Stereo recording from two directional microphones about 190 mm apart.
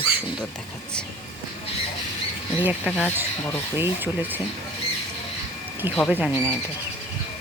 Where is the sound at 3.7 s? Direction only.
10° right (ahead or behind).